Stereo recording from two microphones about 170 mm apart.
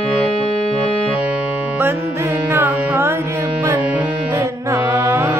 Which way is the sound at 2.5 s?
10° right (ahead or behind).